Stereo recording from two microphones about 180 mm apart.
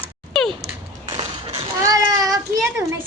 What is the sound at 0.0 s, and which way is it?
Typing, centre (ahead or behind).